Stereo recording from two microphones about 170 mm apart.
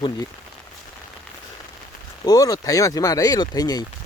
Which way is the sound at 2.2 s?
20° left (ahead or behind).